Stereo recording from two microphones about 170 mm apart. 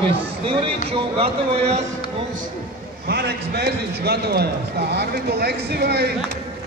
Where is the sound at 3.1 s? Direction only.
75° right (ahead or behind).